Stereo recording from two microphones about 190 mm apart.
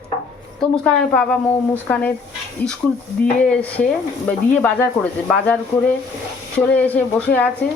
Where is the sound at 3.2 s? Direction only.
5° left (ahead or behind).